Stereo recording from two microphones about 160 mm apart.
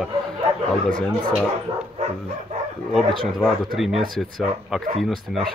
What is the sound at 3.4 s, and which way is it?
Speech, centre (ahead or behind).